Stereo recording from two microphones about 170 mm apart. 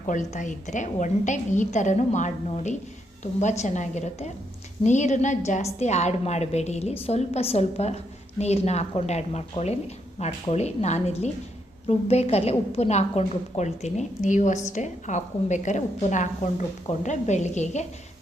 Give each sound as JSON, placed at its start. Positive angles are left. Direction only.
{"t": 0.1, "sound": "a woman's voice", "side_deg": 45}